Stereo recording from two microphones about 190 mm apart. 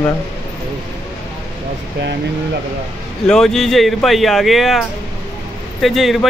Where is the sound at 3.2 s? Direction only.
5° left (ahead or behind).